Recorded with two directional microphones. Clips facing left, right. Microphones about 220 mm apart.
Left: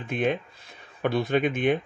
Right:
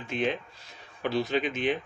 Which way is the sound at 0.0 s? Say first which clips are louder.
Left 3 dB; 55° left (ahead or behind).